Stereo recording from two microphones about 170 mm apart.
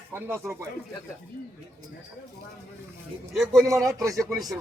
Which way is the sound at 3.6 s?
20° right (ahead or behind).